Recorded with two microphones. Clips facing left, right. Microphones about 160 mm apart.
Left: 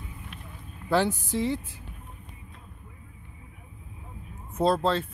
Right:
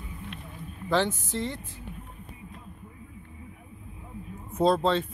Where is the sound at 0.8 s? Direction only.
10° left (ahead or behind).